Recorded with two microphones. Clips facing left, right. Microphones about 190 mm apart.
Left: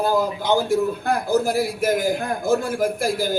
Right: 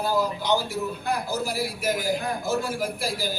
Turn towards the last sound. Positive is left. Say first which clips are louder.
# left 7 dB
turn(degrees=50)  # may be behind; listen again after turning